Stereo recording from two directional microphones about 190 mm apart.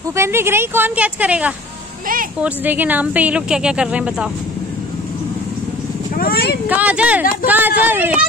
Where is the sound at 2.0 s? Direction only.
45° right (ahead or behind).